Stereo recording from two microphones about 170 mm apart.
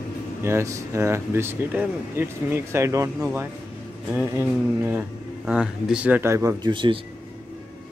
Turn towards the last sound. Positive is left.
turn(degrees=-30)  # may be behind; listen again after turning